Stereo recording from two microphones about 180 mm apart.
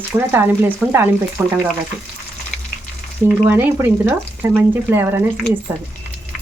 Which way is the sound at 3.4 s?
10° right (ahead or behind).